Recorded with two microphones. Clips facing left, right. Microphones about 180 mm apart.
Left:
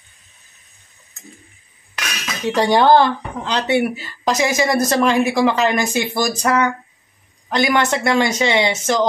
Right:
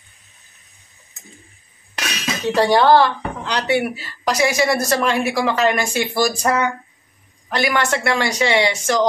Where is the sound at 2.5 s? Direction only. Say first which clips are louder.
Left 1 dB; 15° left (ahead or behind).